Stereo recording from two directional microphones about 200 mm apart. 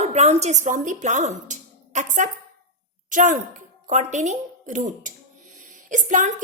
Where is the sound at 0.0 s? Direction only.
35° right (ahead or behind).